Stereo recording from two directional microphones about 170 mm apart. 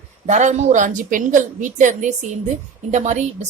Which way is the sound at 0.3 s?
45° right (ahead or behind).